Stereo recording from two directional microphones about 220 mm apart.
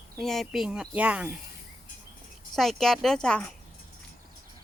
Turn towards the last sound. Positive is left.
turn(degrees=5)  # may be behind; listen again after turning